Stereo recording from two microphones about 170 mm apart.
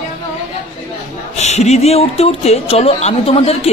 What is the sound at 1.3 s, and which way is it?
A man's voice, 40° left (ahead or behind).